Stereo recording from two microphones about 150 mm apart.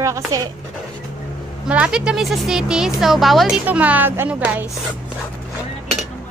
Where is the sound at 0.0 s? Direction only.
20° right (ahead or behind).